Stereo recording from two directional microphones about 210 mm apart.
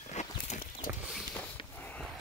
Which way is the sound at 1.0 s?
5° left (ahead or behind).